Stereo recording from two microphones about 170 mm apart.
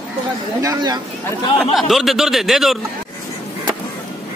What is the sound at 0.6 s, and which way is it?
Speech, 20° right (ahead or behind).